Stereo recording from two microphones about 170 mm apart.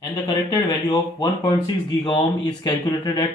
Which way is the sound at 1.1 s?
30° left (ahead or behind).